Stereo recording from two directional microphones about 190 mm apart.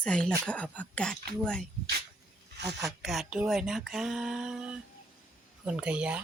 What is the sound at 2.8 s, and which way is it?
Speech, centre (ahead or behind).